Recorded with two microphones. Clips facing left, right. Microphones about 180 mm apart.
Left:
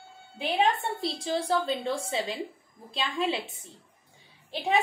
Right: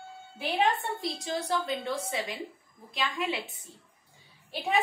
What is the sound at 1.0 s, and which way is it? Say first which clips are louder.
A woman's voice: left 3 dB; 30° left (ahead or behind).